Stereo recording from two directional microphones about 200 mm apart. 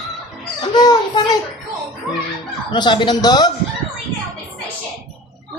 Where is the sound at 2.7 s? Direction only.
25° left (ahead or behind).